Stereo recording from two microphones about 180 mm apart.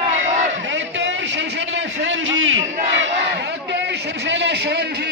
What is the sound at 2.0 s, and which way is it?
A man's voice, 90° right.